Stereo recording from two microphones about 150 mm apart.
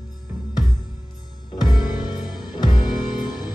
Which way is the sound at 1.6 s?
30° left (ahead or behind).